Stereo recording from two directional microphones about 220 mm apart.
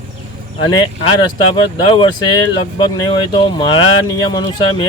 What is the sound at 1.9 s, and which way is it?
Speech, 20° left (ahead or behind).